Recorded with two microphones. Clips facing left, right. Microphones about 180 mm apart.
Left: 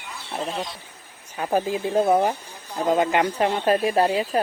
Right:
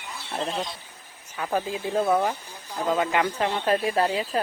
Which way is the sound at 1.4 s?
30° left (ahead or behind).